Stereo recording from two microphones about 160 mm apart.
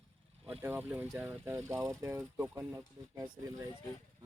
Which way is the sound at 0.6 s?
10° right (ahead or behind).